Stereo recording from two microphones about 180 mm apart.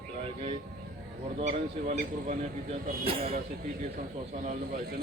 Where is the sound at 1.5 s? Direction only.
45° right (ahead or behind).